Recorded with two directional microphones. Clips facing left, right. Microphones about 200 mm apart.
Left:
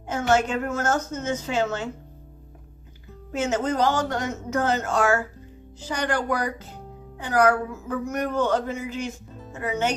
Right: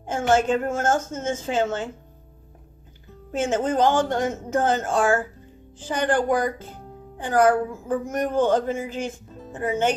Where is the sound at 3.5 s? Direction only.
30° right (ahead or behind).